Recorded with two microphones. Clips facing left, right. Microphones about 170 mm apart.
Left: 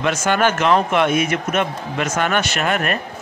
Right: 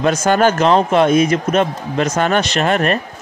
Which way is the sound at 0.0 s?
35° right (ahead or behind).